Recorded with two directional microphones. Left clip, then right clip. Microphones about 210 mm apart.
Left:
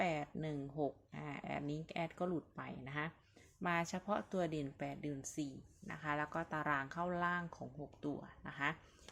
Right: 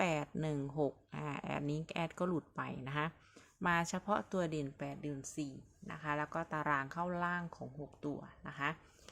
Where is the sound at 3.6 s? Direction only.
20° right (ahead or behind).